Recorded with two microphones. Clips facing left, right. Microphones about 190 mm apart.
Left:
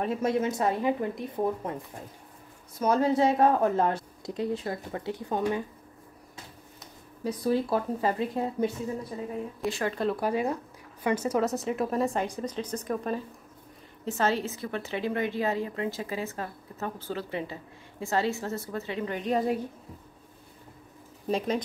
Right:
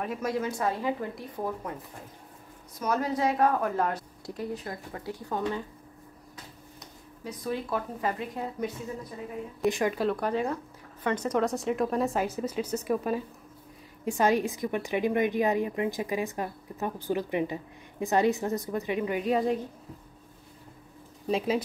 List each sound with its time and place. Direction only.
0.0 s speech: 25° left (ahead or behind)
2.8 s speech: 25° left (ahead or behind)
7.2 s speech: 30° left (ahead or behind)
9.7 s a woman's voice: 15° right (ahead or behind)
9.9 s a woman's voice: 5° left (ahead or behind)
21.3 s speech: centre (ahead or behind)